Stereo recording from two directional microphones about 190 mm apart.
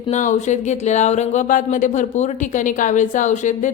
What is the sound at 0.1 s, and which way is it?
A woman's voice, 40° left (ahead or behind).